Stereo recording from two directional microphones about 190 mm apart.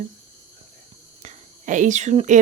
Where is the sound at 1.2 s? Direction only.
40° right (ahead or behind).